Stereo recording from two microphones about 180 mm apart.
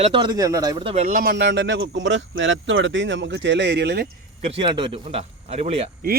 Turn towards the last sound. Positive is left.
turn(degrees=-35)  # may be behind; listen again after turning